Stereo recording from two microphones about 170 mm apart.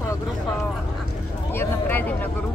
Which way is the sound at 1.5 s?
10° left (ahead or behind).